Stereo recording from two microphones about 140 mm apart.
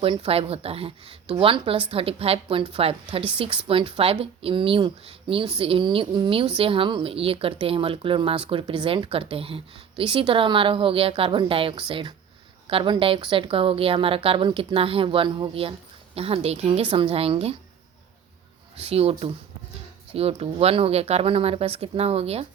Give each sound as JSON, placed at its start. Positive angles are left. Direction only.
{"t": 0.0, "sound": "speech", "side_deg": -40}
{"t": 18.8, "sound": "speech", "side_deg": -45}